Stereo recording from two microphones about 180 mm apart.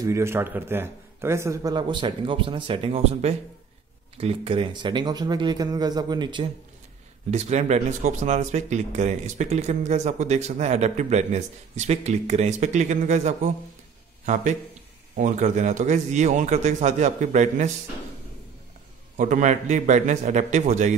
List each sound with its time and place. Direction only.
0.0 s a man's voice: 15° right (ahead or behind)
7.2 s speech: 40° right (ahead or behind)
19.1 s speech: 45° right (ahead or behind)